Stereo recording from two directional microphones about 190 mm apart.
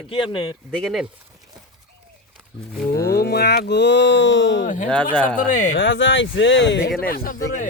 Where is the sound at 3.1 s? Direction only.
60° left (ahead or behind); by 4.6 s 75° left (ahead or behind).